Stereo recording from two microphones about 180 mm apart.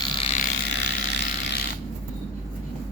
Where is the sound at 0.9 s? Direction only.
70° left (ahead or behind).